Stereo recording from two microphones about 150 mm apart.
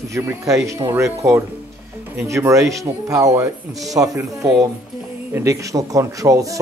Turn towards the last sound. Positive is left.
turn(degrees=-20)  # may be behind; listen again after turning